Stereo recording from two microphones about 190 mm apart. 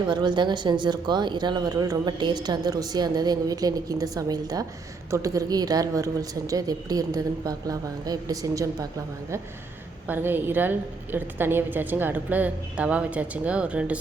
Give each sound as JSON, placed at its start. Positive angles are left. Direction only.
{"t": 0.1, "sound": "a woman's voice", "side_deg": -25}
{"t": 10.1, "sound": "a woman's voice", "side_deg": -10}